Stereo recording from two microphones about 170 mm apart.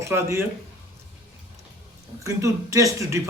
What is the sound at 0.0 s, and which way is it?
Speech, 15° right (ahead or behind).